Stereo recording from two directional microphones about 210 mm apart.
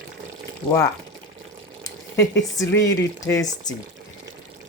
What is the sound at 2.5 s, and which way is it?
Speech, 15° left (ahead or behind).